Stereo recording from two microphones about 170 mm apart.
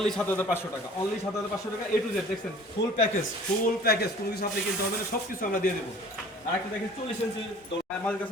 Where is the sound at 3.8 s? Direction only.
65° left (ahead or behind).